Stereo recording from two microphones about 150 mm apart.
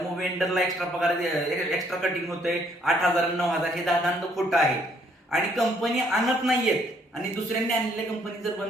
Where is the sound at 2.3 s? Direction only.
Centre (ahead or behind).